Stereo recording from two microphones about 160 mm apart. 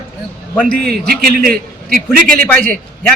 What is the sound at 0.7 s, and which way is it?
Speech, centre (ahead or behind).